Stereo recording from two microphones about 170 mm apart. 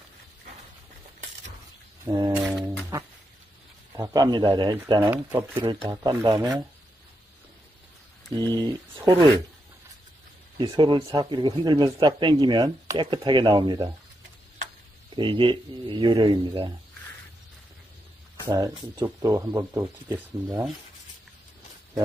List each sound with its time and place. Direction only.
2.0 s speech: 25° right (ahead or behind)
2.3 s brass instrument: centre (ahead or behind)
2.6 s a sound: 15° right (ahead or behind)
3.9 s speech: 20° right (ahead or behind)
5.1 s speech: 10° right (ahead or behind)
5.6 s speech: 25° right (ahead or behind)
8.5 s speech: 20° right (ahead or behind)
10.6 s speech: 30° right (ahead or behind)
15.1 s speech: 30° right (ahead or behind)
18.5 s speech: 20° right (ahead or behind)